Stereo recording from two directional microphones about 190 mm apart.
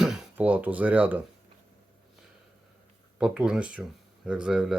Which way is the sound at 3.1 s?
5° right (ahead or behind).